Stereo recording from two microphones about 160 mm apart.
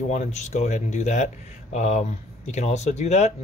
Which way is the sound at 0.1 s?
45° left (ahead or behind).